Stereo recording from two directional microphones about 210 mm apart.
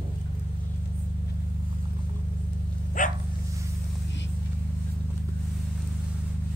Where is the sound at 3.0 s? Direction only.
40° left (ahead or behind).